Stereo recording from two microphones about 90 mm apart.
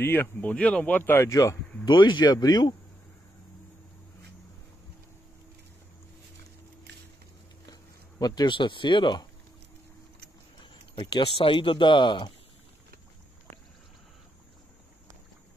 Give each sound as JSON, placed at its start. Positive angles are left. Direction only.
{"t": 0.0, "sound": "speech", "side_deg": 20}
{"t": 1.3, "sound": "speech", "side_deg": 40}
{"t": 1.9, "sound": "speech", "side_deg": 60}
{"t": 8.2, "sound": "speech", "side_deg": 50}
{"t": 10.6, "sound": "speech", "side_deg": 65}